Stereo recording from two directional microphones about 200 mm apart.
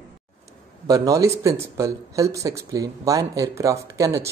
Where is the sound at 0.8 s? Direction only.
15° right (ahead or behind).